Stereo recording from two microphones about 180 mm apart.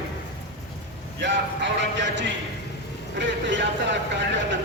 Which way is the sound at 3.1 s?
90° right.